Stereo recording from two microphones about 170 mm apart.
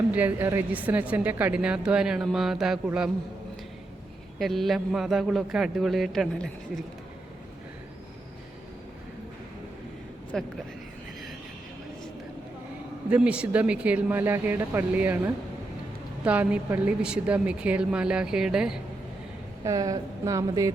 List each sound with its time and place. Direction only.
0.1 s a woman's voice: 10° right (ahead or behind)
4.4 s a woman's voice: centre (ahead or behind)
10.3 s a woman's voice: 5° left (ahead or behind)
13.1 s a woman's voice: 5° right (ahead or behind)
19.6 s a woman's voice: 20° right (ahead or behind)